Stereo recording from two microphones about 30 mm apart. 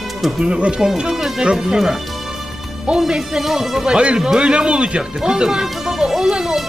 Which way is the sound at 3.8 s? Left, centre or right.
Right.